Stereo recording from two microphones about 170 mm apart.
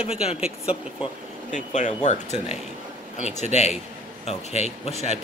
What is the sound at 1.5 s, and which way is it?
A man's voice, 45° left (ahead or behind).